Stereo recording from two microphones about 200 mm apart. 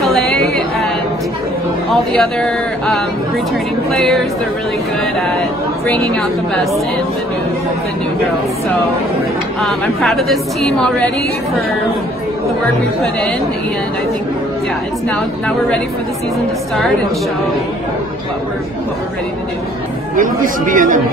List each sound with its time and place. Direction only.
0.0 s yodeling: centre (ahead or behind)
1.9 s a woman's voice: centre (ahead or behind)
5.9 s a woman's voice: 5° left (ahead or behind)
9.6 s a woman's voice: centre (ahead or behind)
15.0 s a woman's voice: 5° left (ahead or behind)
20.2 s speech: 40° right (ahead or behind)